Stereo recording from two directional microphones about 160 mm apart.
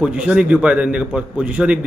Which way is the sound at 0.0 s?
5° right (ahead or behind).